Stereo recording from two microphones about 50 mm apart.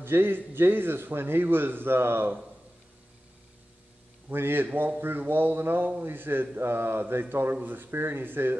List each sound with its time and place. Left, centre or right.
0.0 s a man's voice: right
4.3 s a man's voice: right